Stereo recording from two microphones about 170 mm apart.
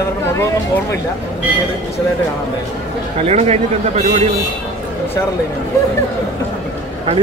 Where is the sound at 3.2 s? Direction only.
40° right (ahead or behind).